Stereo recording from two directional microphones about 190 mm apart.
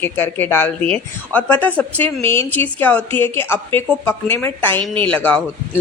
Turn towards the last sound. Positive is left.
turn(degrees=10)  # may be behind; listen again after turning